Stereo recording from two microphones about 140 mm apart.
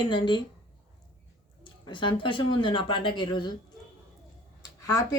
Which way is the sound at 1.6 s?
35° left (ahead or behind).